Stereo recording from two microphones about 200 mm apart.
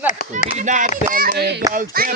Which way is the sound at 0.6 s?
40° right (ahead or behind).